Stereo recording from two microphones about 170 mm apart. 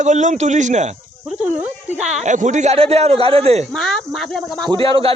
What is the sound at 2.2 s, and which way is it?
Speech, 45° right (ahead or behind).